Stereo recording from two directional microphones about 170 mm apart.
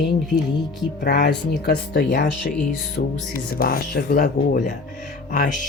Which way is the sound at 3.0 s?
55° left (ahead or behind).